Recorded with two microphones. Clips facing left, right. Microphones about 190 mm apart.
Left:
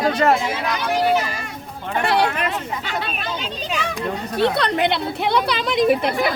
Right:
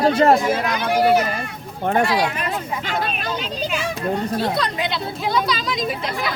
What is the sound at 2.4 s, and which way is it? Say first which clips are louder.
Speech: even; 45° right (ahead or behind).